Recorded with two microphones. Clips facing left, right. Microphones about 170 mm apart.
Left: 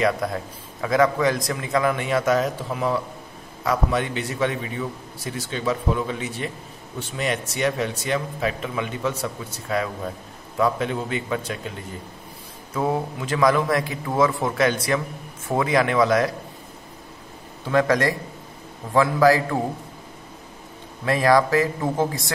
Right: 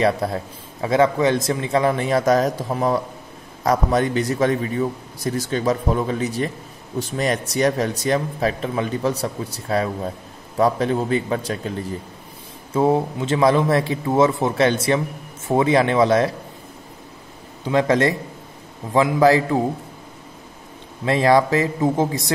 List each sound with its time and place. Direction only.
0.0 s a man's voice: 30° right (ahead or behind)
12.7 s a man's voice: 25° right (ahead or behind)
17.6 s a man's voice: 20° right (ahead or behind)
21.0 s a man's voice: 25° right (ahead or behind)